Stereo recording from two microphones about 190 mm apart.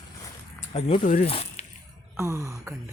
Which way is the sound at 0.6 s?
35° left (ahead or behind).